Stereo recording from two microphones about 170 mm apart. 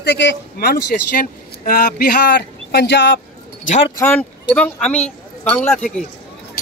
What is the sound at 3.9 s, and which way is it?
Speech, 10° left (ahead or behind).